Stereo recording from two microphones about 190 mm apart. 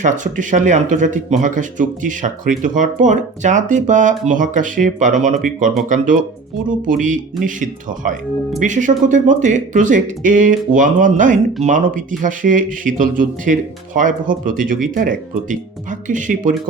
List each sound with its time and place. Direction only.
0.0 s speech: 40° right (ahead or behind)
6.7 s speech: 45° right (ahead or behind)